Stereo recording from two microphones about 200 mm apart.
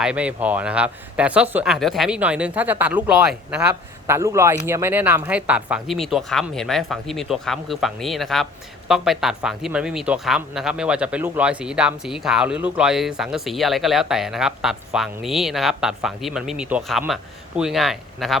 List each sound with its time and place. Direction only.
0.0 s speech: 5° right (ahead or behind)